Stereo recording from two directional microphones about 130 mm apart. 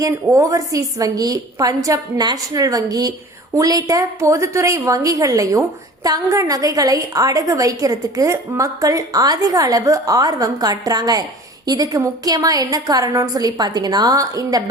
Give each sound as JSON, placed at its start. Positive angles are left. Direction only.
{"t": 0.0, "sound": "a woman's voice", "side_deg": -25}